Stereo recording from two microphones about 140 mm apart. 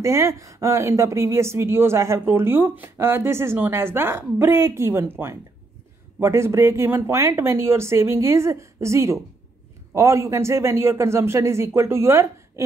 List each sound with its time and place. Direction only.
0.0 s speech: 20° right (ahead or behind)